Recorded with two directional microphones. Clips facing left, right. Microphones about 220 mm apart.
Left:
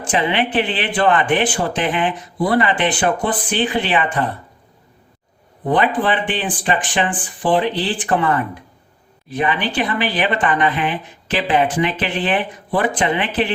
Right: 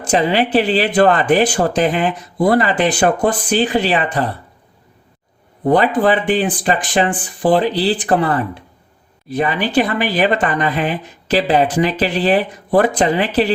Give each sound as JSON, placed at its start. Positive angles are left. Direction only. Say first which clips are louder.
{"t": 0.0, "sound": "speech", "louder": "right 4 dB", "side_deg": -40}
{"t": 5.6, "sound": "speech", "louder": "right 4 dB", "side_deg": -40}